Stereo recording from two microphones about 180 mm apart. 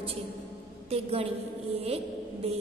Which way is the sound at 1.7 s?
35° right (ahead or behind).